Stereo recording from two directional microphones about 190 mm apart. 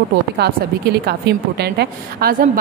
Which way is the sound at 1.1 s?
60° right (ahead or behind).